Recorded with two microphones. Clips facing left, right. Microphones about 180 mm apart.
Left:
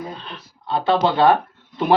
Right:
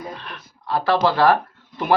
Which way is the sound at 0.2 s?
25° left (ahead or behind).